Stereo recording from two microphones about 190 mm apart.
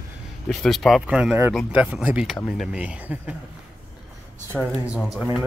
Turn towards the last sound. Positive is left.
turn(degrees=-5)  # may be behind; listen again after turning